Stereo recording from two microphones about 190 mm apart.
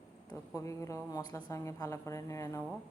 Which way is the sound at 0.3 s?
15° left (ahead or behind).